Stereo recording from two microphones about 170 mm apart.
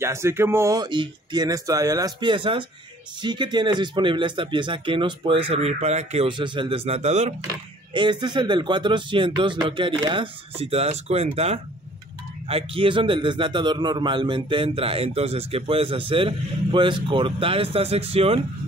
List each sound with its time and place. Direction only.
0.0 s speech: 15° right (ahead or behind); by 7.3 s 40° right (ahead or behind)
7.9 s a man's voice: 25° right (ahead or behind)